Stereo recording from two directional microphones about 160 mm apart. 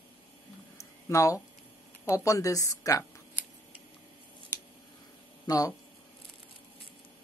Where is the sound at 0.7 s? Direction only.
20° left (ahead or behind).